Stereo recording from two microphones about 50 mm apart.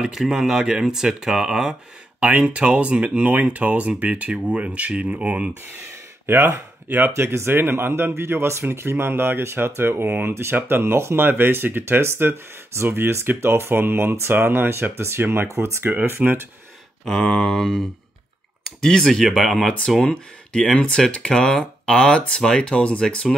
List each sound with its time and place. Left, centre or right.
0.0 s speech: centre
2.1 s speech: right
6.2 s speech: right
17.0 s speech: centre
18.8 s speech: centre
20.0 s speech: centre